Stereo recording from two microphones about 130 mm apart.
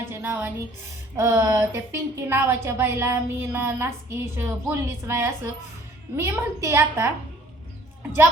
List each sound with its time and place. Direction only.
0.0 s music: 15° right (ahead or behind)
1.1 s a woman's voice: 20° right (ahead or behind)